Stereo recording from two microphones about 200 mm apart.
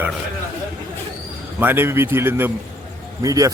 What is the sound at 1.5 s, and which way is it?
A man's voice, 10° right (ahead or behind).